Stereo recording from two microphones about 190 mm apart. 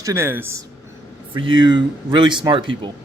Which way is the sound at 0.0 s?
15° right (ahead or behind).